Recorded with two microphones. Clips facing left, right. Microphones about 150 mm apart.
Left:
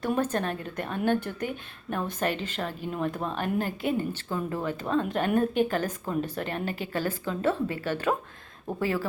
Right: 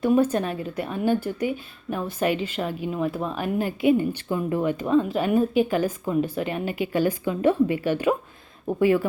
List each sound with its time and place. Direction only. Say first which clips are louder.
0.1 s speech: right 5 dB; 10° right (ahead or behind)